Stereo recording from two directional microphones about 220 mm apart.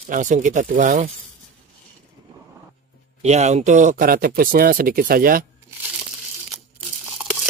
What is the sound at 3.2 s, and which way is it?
Speech, 30° right (ahead or behind).